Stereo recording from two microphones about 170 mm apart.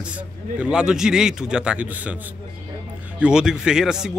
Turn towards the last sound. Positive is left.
turn(degrees=-5)  # may be behind; listen again after turning